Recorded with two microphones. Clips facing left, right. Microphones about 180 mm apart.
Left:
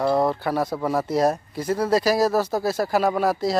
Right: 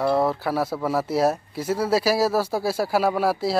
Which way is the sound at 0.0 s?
5° right (ahead or behind).